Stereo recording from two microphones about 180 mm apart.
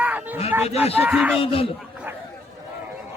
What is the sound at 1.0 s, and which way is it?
Speech, 10° right (ahead or behind).